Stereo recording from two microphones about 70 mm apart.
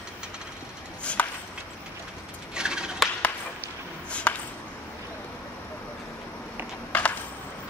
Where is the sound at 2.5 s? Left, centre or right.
Centre.